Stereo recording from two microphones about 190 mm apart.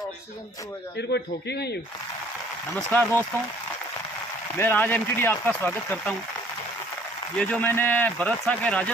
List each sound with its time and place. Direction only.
0.9 s a man's voice: 60° left (ahead or behind)
2.7 s speech: 10° left (ahead or behind)
4.6 s speech: 10° left (ahead or behind)
7.3 s speech: 5° left (ahead or behind)